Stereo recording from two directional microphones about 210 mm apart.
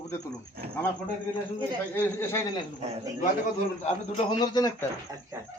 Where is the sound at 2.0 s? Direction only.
10° left (ahead or behind).